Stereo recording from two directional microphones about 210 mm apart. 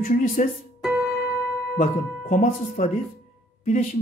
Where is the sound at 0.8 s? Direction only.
Centre (ahead or behind).